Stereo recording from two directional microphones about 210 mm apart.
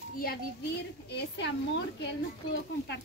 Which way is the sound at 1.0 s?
55° left (ahead or behind).